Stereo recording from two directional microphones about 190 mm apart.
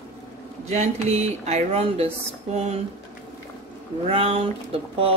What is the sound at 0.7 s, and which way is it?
Speech, 35° right (ahead or behind).